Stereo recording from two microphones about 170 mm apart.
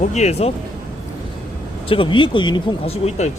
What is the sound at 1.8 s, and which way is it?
Speech, 30° left (ahead or behind).